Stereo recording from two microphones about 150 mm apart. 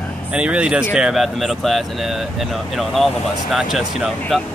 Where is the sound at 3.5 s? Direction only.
Centre (ahead or behind).